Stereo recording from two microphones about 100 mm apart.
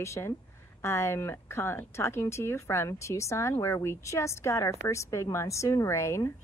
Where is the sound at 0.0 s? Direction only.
30° left (ahead or behind).